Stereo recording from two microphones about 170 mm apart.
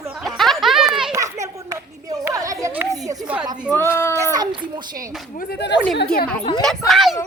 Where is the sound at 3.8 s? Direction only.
15° left (ahead or behind).